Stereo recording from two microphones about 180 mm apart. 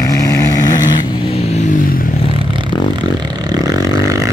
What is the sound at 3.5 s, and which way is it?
Vehicle, 20° right (ahead or behind).